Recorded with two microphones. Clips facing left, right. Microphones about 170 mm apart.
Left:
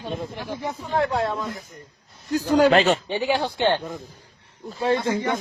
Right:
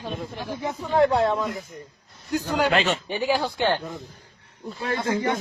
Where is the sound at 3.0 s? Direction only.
25° left (ahead or behind).